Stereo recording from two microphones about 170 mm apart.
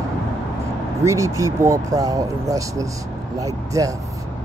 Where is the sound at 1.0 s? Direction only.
20° right (ahead or behind).